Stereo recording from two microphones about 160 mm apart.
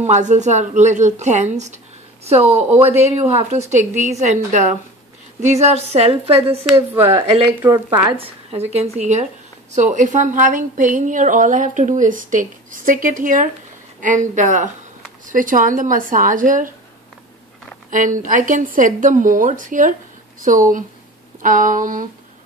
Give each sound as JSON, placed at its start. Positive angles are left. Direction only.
{"t": 0.0, "sound": "a woman's voice", "side_deg": -45}
{"t": 6.9, "sound": "speech", "side_deg": -15}
{"t": 8.2, "sound": "a woman's voice", "side_deg": -40}
{"t": 17.9, "sound": "a woman's voice", "side_deg": -55}